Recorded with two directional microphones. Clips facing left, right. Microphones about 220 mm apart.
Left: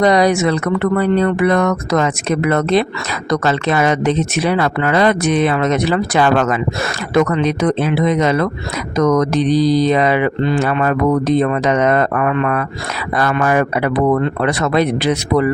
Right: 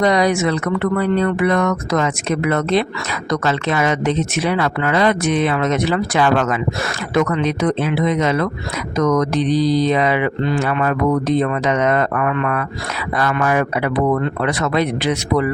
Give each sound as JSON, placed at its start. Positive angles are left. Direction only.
{"t": 0.0, "sound": "speech", "side_deg": 35}